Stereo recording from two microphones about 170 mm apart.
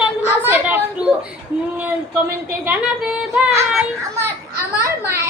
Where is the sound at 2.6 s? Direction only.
5° right (ahead or behind).